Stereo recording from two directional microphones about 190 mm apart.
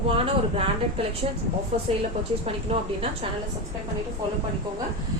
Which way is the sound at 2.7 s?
30° right (ahead or behind).